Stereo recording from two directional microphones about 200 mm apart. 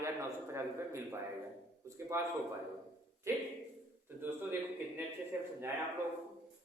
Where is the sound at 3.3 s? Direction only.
10° right (ahead or behind).